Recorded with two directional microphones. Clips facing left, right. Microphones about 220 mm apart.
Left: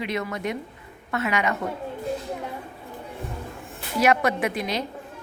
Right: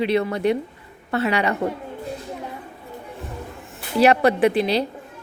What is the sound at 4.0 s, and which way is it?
Speech, 35° right (ahead or behind).